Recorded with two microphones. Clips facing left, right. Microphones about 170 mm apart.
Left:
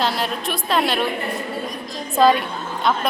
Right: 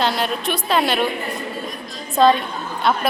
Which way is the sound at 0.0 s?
Centre (ahead or behind).